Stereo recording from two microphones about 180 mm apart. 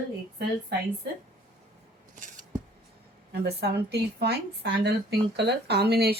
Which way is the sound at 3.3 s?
65° right (ahead or behind).